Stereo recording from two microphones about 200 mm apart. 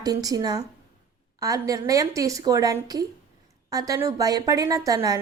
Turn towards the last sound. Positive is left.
turn(degrees=-15)  # may be behind; listen again after turning